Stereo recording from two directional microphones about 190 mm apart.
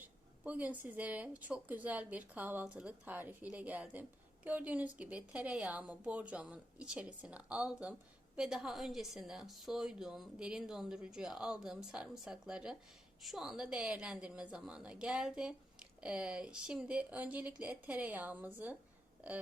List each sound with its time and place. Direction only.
0.0 s a woman's voice: 10° right (ahead or behind)